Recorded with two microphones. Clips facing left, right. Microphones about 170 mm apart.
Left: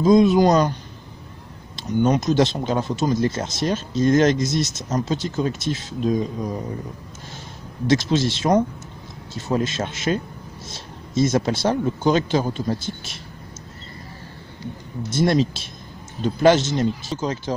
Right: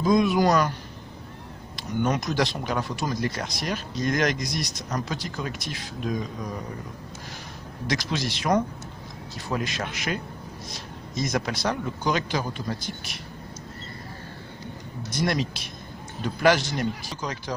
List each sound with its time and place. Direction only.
0.0 s speech: 25° left (ahead or behind)
1.8 s speech: 20° left (ahead or behind)
7.8 s speech: 25° left (ahead or behind)
15.0 s speech: 25° left (ahead or behind)